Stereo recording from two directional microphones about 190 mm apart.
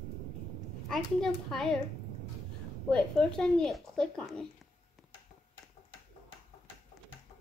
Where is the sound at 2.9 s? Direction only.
5° left (ahead or behind).